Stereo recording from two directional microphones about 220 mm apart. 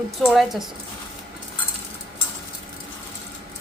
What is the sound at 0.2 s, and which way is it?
Speech, centre (ahead or behind).